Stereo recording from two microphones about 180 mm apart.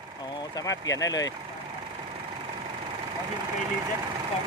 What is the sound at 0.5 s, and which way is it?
Speech, 20° left (ahead or behind).